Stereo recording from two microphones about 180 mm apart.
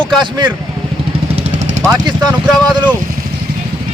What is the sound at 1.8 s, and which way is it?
Speech, 20° right (ahead or behind).